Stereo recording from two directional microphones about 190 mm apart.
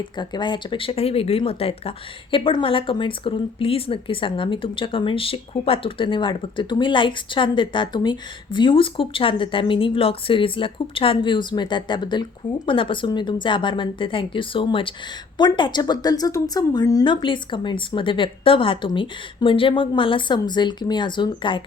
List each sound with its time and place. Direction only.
0.0 s speech: 25° left (ahead or behind)